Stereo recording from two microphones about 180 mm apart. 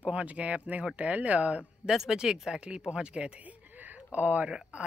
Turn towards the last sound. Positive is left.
turn(degrees=-5)  # may be behind; listen again after turning